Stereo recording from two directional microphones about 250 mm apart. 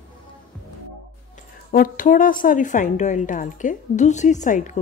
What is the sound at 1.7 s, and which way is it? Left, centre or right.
A woman's voice, left.